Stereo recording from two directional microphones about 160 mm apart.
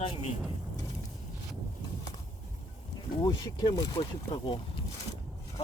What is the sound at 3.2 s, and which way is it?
Speech, 25° left (ahead or behind).